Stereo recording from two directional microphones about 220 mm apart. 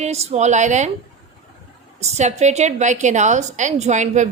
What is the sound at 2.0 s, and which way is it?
A woman's voice, 30° right (ahead or behind).